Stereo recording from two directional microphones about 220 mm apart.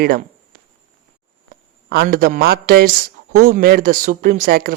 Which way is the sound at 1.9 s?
45° right (ahead or behind).